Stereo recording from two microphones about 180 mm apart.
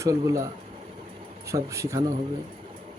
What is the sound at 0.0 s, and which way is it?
Speech, 15° right (ahead or behind).